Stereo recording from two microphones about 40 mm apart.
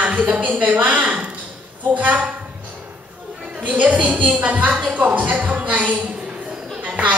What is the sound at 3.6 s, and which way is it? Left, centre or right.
A woman's voice, right.